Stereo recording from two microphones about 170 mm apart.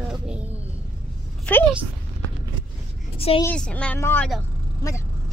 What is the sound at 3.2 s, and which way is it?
Speech, 35° left (ahead or behind).